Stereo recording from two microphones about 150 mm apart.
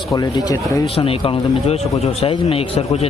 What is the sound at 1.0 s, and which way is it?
Speech, 40° left (ahead or behind).